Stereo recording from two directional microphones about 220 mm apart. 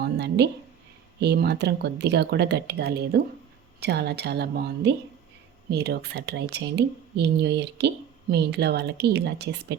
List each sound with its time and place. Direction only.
0.0 s speech: 50° right (ahead or behind)